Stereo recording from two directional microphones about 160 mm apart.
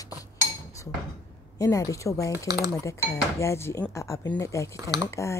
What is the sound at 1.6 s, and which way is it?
Speech, 20° left (ahead or behind).